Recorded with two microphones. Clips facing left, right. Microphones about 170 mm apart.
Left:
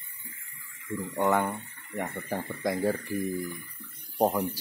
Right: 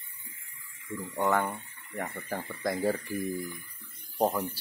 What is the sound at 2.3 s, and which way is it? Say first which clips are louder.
Speech: left 2 dB; 15° left (ahead or behind).